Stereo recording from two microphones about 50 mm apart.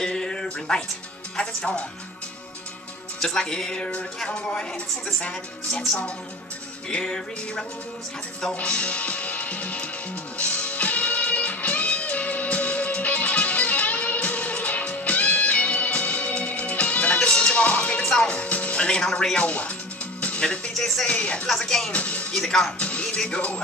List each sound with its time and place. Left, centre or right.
0.0 s music: centre
3.2 s music: centre
7.0 s music: centre
8.5 s music: left
20.7 s music: centre
21.1 s music: left
21.5 s music: centre
21.9 s speech: left
22.3 s music: centre
22.8 s music: left